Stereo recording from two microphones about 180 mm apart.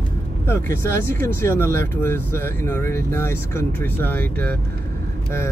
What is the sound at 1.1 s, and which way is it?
Speech, 15° left (ahead or behind).